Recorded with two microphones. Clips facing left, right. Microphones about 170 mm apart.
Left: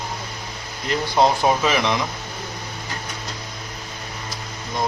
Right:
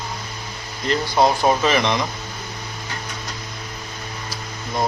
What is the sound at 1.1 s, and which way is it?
Speech, 20° left (ahead or behind).